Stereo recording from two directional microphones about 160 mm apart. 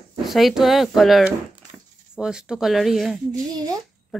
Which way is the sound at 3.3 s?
25° right (ahead or behind).